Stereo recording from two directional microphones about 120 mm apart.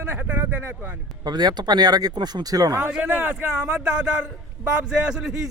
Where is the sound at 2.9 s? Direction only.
10° right (ahead or behind).